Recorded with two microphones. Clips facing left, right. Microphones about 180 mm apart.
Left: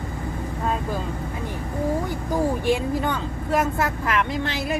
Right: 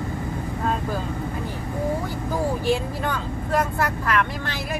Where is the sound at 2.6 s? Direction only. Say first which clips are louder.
Left 2 dB; 20° left (ahead or behind).